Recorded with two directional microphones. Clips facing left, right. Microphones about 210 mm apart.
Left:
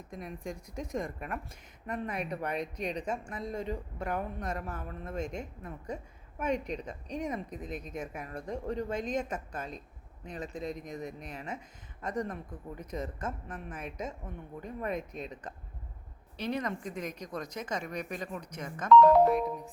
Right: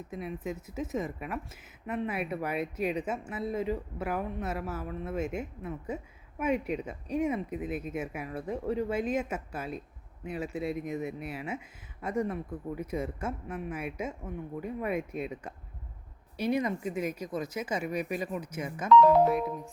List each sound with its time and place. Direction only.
0.1 s speech: 5° right (ahead or behind)